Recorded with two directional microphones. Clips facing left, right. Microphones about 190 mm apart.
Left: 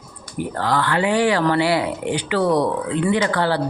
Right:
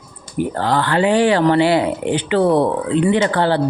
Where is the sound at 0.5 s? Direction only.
30° right (ahead or behind).